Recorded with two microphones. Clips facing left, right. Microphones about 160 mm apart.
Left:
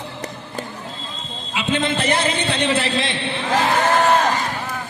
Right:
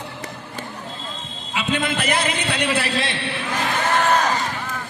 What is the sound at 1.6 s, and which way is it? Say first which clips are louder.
A man's voice: left 2 dB; 25° left (ahead or behind).